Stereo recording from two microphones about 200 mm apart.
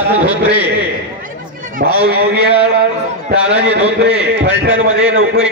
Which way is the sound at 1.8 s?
55° right (ahead or behind).